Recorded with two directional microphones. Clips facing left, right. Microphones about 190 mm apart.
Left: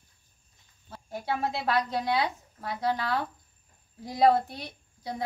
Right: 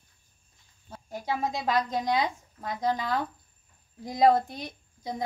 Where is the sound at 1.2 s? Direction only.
15° right (ahead or behind).